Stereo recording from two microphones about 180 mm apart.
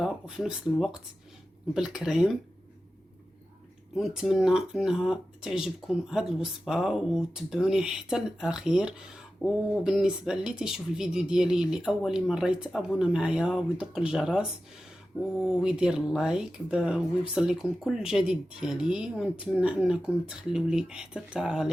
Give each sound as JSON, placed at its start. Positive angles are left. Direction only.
{"t": 0.0, "sound": "speech", "side_deg": -5}
{"t": 3.9, "sound": "speech", "side_deg": -5}
{"t": 15.4, "sound": "speech", "side_deg": -5}